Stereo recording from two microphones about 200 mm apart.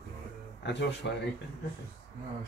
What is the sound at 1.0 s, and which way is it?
Speech, 55° left (ahead or behind).